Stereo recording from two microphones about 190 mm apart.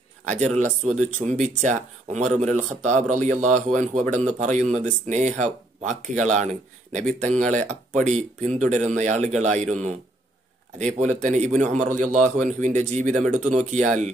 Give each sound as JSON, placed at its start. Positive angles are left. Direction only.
{"t": 0.3, "sound": "speech", "side_deg": -40}